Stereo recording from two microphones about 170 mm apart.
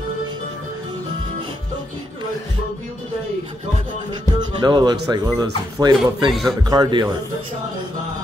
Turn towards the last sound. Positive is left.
turn(degrees=-25)  # may be behind; listen again after turning